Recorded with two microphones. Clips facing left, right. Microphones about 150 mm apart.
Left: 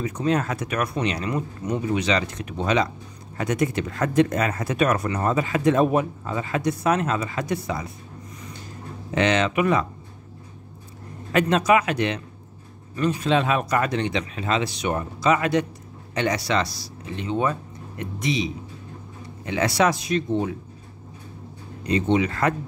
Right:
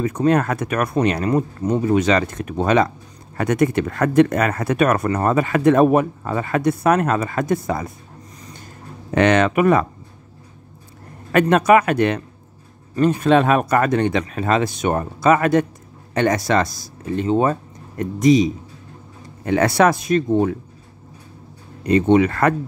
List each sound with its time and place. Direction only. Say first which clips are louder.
0.0 s speech: right 6 dB; 55° right (ahead or behind)
9.1 s speech: right 6 dB; 55° right (ahead or behind)
11.3 s speech: right 5 dB; 55° right (ahead or behind)
21.8 s speech: right 7 dB; 55° right (ahead or behind)